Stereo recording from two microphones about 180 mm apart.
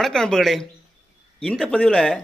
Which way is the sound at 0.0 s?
5° left (ahead or behind).